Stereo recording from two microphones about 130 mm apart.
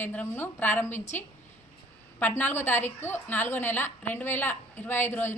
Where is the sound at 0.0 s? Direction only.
15° left (ahead or behind).